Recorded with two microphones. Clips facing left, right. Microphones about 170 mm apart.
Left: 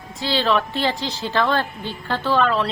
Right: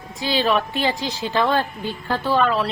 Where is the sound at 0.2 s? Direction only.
15° right (ahead or behind).